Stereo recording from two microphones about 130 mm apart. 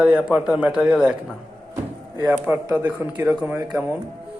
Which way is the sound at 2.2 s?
15° right (ahead or behind).